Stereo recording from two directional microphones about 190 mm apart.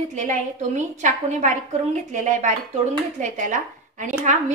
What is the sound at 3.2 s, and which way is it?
A woman's voice, 40° right (ahead or behind).